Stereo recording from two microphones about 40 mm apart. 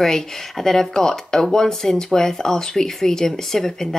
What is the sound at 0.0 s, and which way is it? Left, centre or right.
A woman's voice, centre.